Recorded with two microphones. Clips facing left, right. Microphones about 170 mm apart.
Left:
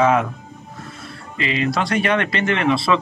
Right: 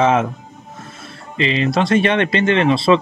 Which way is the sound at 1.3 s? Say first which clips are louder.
Right 4 dB; 25° right (ahead or behind).